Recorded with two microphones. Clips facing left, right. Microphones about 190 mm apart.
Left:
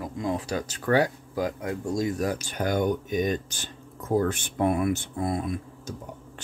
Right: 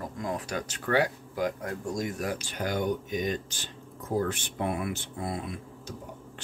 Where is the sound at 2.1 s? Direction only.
40° left (ahead or behind).